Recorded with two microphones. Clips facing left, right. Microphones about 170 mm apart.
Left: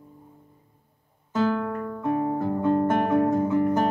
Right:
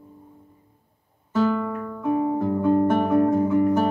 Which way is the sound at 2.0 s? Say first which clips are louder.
Right 3 dB; centre (ahead or behind).